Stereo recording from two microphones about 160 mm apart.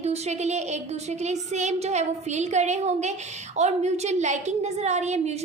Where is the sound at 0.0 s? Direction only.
45° right (ahead or behind).